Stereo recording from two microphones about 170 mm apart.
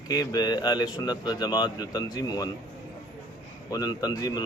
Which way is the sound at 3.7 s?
20° left (ahead or behind).